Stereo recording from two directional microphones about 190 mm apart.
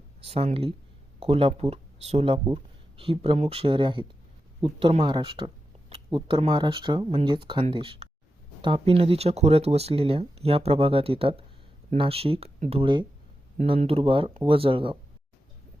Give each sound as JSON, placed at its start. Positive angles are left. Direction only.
{"t": 0.3, "sound": "speech", "side_deg": -30}
{"t": 12.8, "sound": "speech", "side_deg": -25}